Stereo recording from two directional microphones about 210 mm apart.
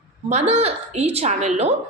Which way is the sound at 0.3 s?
30° right (ahead or behind).